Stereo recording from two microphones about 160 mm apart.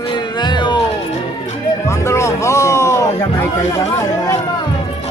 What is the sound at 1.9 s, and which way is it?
Music, 15° left (ahead or behind).